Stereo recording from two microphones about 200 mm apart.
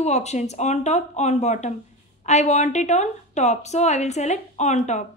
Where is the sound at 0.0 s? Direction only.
35° left (ahead or behind).